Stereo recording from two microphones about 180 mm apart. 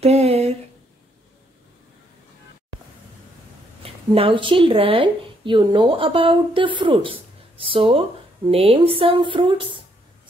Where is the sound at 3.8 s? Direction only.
30° right (ahead or behind).